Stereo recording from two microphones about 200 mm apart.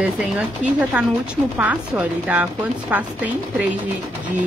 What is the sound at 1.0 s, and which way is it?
A woman's voice, 5° right (ahead or behind).